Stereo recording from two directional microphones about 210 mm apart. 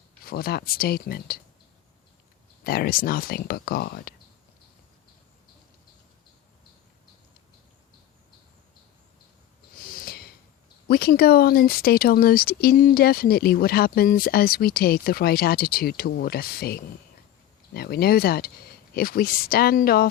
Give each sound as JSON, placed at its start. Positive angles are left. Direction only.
{"t": 0.3, "sound": "speech", "side_deg": 45}
{"t": 2.6, "sound": "speech", "side_deg": 45}
{"t": 9.7, "sound": "snort", "side_deg": 45}
{"t": 10.8, "sound": "speech", "side_deg": 45}